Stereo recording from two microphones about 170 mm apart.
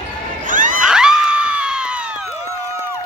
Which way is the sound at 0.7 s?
5° right (ahead or behind).